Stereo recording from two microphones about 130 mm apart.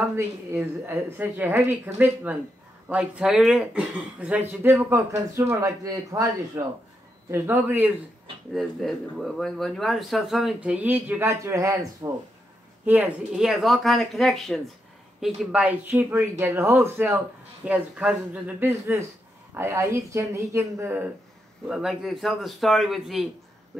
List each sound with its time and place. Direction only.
0.1 s speech: 15° right (ahead or behind)
8.5 s speech: centre (ahead or behind); by 12.1 s 25° right (ahead or behind)
12.8 s speech: 10° right (ahead or behind)
21.6 s speech: 5° right (ahead or behind)